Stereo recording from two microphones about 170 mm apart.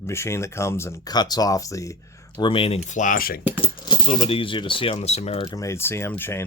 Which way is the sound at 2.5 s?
35° left (ahead or behind).